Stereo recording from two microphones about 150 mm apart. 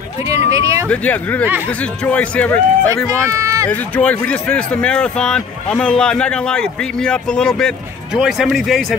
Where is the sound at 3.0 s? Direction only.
20° right (ahead or behind).